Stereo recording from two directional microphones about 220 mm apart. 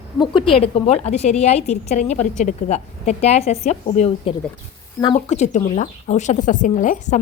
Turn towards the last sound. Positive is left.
turn(degrees=35)  # may be behind; listen again after turning